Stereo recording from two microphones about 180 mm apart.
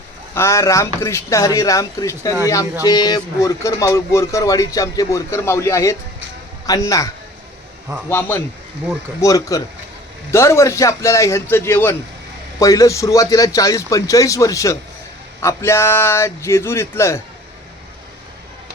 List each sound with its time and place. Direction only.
0.3 s speech: 15° left (ahead or behind)
9.2 s speech: 20° left (ahead or behind)